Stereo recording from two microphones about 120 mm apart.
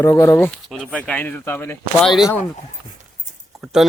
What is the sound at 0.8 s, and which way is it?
Speech, 10° left (ahead or behind).